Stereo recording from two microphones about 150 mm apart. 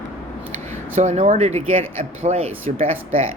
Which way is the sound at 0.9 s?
55° right (ahead or behind).